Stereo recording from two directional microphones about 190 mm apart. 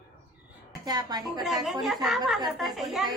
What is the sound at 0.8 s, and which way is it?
Speech, 20° right (ahead or behind).